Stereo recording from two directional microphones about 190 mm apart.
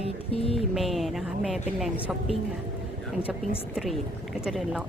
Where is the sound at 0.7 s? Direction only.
Centre (ahead or behind).